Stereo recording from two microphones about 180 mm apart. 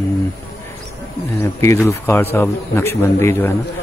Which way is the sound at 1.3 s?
15° left (ahead or behind).